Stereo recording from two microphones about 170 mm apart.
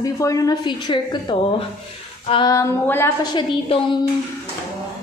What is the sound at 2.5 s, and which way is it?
Speech, 15° left (ahead or behind).